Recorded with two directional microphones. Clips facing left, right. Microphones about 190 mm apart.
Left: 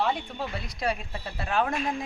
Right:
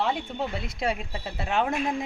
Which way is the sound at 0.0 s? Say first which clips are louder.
Right 1 dB; 25° right (ahead or behind).